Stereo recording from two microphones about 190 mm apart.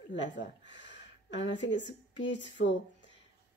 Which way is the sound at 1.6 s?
75° left (ahead or behind).